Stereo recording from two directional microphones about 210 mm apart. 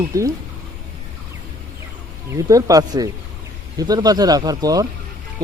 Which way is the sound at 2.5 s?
15° right (ahead or behind).